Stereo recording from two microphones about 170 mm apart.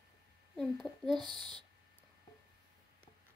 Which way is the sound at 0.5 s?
Centre (ahead or behind).